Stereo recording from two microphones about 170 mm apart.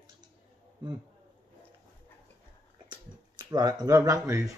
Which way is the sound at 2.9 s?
25° right (ahead or behind).